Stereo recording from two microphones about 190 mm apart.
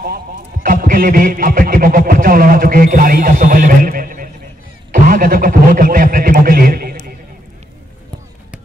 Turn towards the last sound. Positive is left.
turn(degrees=-50)  # may be behind; listen again after turning